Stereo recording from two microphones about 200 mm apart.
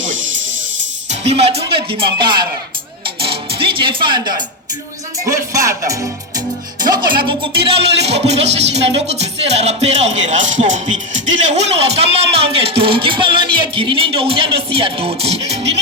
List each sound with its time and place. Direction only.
1.3 s speech: 30° right (ahead or behind)
5.2 s music: 15° right (ahead or behind)
7.3 s speech: 25° right (ahead or behind)